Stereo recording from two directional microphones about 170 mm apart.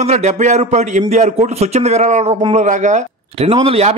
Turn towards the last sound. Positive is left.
turn(degrees=-35)  # may be behind; listen again after turning